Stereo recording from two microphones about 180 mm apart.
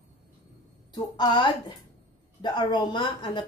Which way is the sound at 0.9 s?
25° left (ahead or behind).